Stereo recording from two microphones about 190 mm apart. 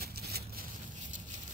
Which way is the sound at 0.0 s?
55° right (ahead or behind).